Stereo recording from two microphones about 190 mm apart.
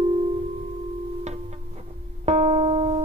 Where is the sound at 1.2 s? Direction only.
35° right (ahead or behind).